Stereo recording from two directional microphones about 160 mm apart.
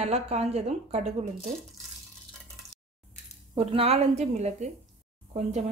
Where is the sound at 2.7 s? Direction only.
90° left.